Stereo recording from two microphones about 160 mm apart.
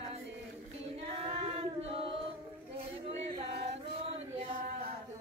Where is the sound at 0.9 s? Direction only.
35° right (ahead or behind).